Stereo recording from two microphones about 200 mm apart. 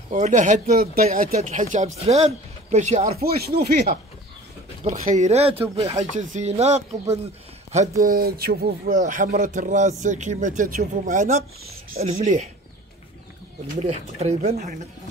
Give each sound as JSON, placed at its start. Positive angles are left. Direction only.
{"t": 0.1, "sound": "speech", "side_deg": -40}
{"t": 3.3, "sound": "speech", "side_deg": -50}
{"t": 4.8, "sound": "speech", "side_deg": -40}
{"t": 5.6, "sound": "speech", "side_deg": -15}
{"t": 6.3, "sound": "speech", "side_deg": -30}
{"t": 13.8, "sound": "speech", "side_deg": -30}